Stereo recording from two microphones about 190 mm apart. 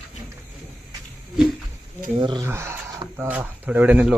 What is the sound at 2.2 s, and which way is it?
Speech, 20° right (ahead or behind).